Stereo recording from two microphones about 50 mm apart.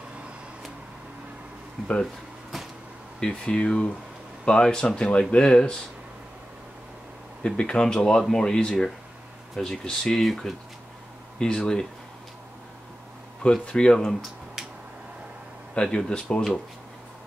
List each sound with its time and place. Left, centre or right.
2.5 s a sound: centre
3.2 s speech: centre
7.5 s speech: centre
11.3 s speech: centre
13.4 s speech: centre
15.7 s speech: left